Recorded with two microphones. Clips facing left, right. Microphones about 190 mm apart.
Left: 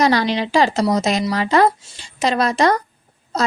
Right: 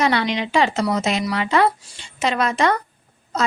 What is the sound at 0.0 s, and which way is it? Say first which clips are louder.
A woman's voice: left 3 dB; 40° left (ahead or behind).